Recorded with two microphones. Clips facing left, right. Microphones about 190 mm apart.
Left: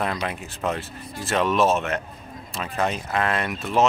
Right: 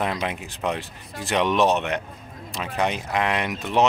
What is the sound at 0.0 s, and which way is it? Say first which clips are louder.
Speech: right 1 dB; 20° right (ahead or behind).